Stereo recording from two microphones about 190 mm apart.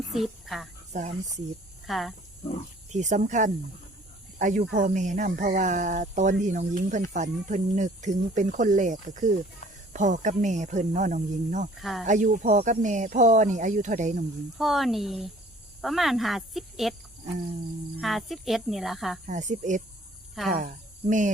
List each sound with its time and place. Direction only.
0.1 s a woman's voice: centre (ahead or behind)
1.9 s speech: centre (ahead or behind)
2.9 s speech: 40° right (ahead or behind)
11.8 s speech: centre (ahead or behind)
12.0 s speech: 40° right (ahead or behind)
14.6 s speech: centre (ahead or behind)
18.0 s speech: centre (ahead or behind)
19.2 s speech: 40° right (ahead or behind)